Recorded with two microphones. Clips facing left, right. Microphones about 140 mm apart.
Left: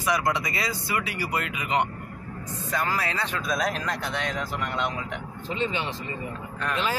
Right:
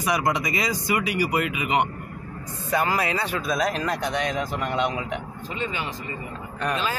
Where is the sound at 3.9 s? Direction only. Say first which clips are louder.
Right 4 dB; 15° right (ahead or behind).